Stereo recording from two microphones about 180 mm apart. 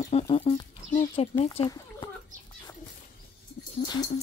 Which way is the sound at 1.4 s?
30° left (ahead or behind).